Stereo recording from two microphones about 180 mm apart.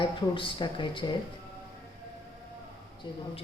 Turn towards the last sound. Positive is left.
turn(degrees=25)  # may be behind; listen again after turning